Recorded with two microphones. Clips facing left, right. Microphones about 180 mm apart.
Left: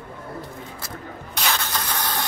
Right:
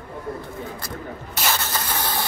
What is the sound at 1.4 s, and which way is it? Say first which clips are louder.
Spray: even; 5° right (ahead or behind).